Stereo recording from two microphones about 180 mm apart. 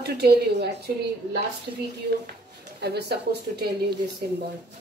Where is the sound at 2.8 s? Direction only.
65° right (ahead or behind).